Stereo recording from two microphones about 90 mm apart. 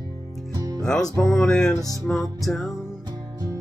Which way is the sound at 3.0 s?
40° right (ahead or behind).